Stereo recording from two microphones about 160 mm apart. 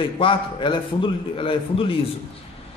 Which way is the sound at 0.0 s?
30° left (ahead or behind).